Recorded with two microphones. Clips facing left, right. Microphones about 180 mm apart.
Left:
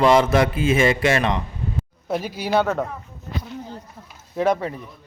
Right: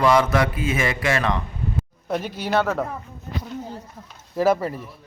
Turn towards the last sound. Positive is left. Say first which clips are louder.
# right 1 dB
turn(degrees=-5)  # may be behind; listen again after turning